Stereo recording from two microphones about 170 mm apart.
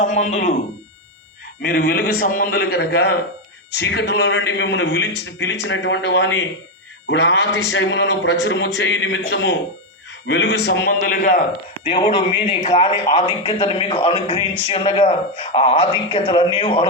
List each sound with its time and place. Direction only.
0.0 s speech: 45° left (ahead or behind)
1.6 s a man's voice: 60° left (ahead or behind)
3.7 s a man's voice: 85° left; by 11.4 s 55° left (ahead or behind)
11.8 s a man's voice: 30° left (ahead or behind)